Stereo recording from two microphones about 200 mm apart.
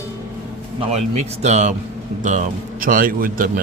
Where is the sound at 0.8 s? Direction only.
35° right (ahead or behind).